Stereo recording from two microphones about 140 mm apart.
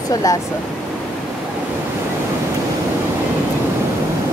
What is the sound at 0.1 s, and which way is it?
Speech, 25° left (ahead or behind).